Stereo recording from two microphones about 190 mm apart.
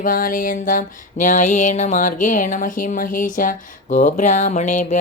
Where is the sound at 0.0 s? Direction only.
45° left (ahead or behind).